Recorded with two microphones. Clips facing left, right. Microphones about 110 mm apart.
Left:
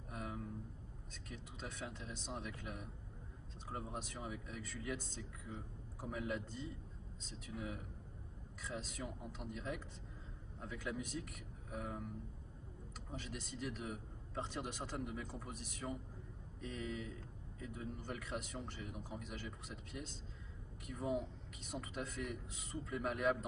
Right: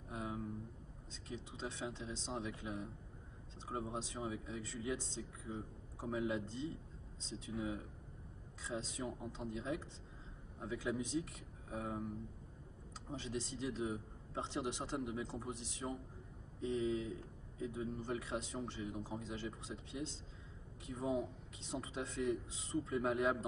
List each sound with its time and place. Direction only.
0.1 s a sound: 20° right (ahead or behind)
1.1 s speech: 20° right (ahead or behind)
13.2 s a man's voice: 25° right (ahead or behind)